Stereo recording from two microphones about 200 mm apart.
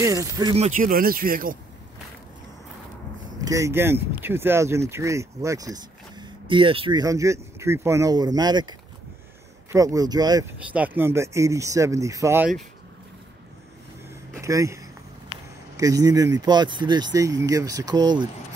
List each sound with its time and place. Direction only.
0.0 s speech: 15° right (ahead or behind)
0.6 s speech: 40° right (ahead or behind)
3.3 s speech: 15° right (ahead or behind)
10.6 s speech: 5° right (ahead or behind)
14.3 s speech: 15° right (ahead or behind)